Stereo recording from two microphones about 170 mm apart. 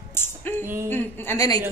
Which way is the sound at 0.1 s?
15° left (ahead or behind).